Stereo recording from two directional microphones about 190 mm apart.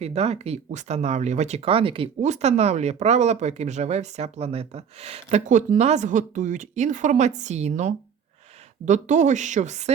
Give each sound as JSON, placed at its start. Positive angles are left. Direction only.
{"t": 0.0, "sound": "speech", "side_deg": -35}